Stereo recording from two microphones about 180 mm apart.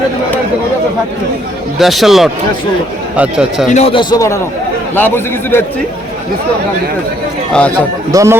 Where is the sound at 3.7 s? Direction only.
35° left (ahead or behind).